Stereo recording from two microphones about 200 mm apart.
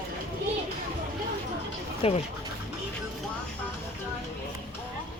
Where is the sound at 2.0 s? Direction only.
30° left (ahead or behind).